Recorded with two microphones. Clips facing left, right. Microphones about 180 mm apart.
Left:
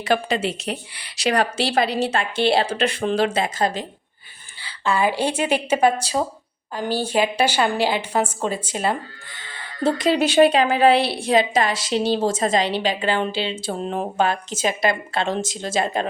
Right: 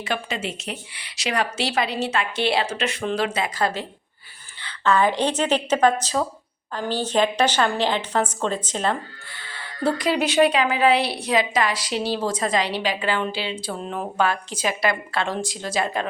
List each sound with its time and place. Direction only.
0.0 s a woman's voice: 35° left (ahead or behind); by 9.0 s 10° left (ahead or behind)
9.8 s a woman's voice: 25° left (ahead or behind)